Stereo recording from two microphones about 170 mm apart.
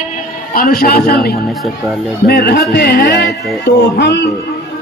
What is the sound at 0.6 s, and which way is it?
Speech, 60° left (ahead or behind).